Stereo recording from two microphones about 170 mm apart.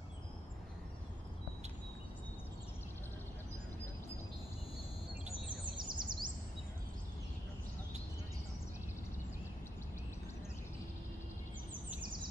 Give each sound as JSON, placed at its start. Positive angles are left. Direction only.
{"t": 5.8, "sound": "chirp", "side_deg": -25}